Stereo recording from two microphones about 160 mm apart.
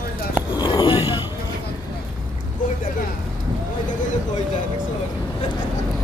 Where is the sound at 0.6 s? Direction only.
25° left (ahead or behind).